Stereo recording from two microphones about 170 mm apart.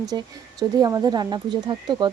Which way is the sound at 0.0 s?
20° right (ahead or behind).